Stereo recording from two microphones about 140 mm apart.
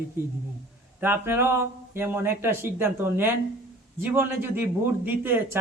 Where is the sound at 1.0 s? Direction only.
15° right (ahead or behind).